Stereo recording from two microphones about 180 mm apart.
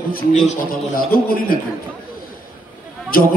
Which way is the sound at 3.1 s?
55° left (ahead or behind).